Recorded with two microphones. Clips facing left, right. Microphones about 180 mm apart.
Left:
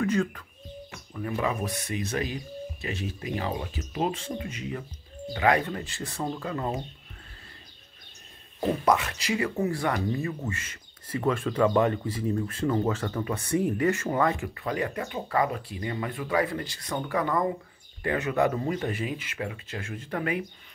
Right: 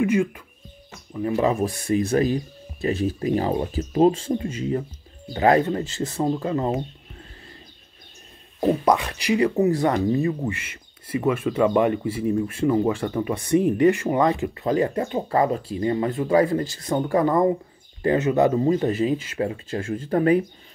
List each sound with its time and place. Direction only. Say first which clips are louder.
0.0 s speech: right 5 dB; 10° right (ahead or behind)
1.1 s speech: right 8 dB; 25° right (ahead or behind)
8.5 s speech: right 5 dB; 15° right (ahead or behind)
16.4 s speech: right 9 dB; 45° right (ahead or behind)
16.8 s speech: right 7 dB; 30° right (ahead or behind)